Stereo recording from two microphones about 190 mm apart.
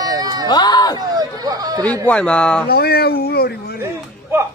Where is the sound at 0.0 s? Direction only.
20° right (ahead or behind).